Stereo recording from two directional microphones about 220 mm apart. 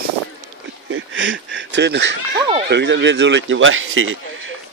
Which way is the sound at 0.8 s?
60° right (ahead or behind).